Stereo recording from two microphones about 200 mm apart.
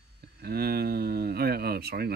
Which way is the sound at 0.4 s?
50° right (ahead or behind).